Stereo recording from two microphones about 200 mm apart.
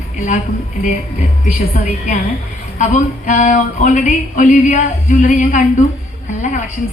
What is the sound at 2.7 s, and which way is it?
Speech, 40° left (ahead or behind).